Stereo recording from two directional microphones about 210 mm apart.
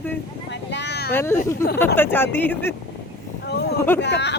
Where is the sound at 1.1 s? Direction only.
10° left (ahead or behind).